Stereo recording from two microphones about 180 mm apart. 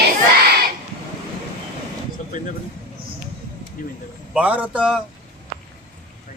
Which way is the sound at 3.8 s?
50° left (ahead or behind).